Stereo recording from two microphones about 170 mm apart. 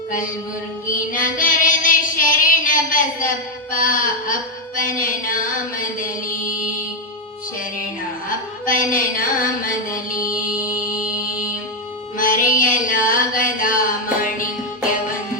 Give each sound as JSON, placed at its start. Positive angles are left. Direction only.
{"t": 0.9, "sound": "child singing", "side_deg": 50}
{"t": 4.8, "sound": "a sound", "side_deg": 50}
{"t": 6.0, "sound": "music", "side_deg": 50}
{"t": 8.6, "sound": "music", "side_deg": 55}
{"t": 12.1, "sound": "music", "side_deg": 50}